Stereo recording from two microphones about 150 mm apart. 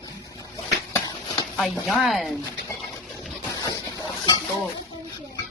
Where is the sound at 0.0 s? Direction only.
25° left (ahead or behind).